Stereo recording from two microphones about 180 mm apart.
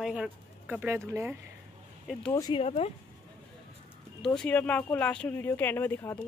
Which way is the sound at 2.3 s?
20° left (ahead or behind).